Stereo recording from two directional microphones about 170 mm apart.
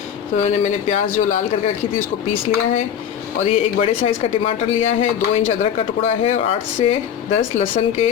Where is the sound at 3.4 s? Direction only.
40° left (ahead or behind).